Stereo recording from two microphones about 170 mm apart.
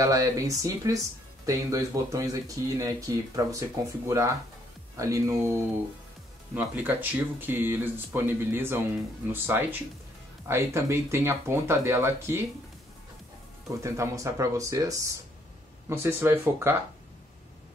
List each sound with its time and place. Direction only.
0.0 s speech: 20° right (ahead or behind)
4.9 s speech: 20° right (ahead or behind)
13.7 s speech: 15° right (ahead or behind)